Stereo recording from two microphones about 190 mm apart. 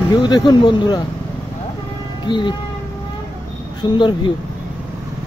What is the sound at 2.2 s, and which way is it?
Speech, 25° left (ahead or behind).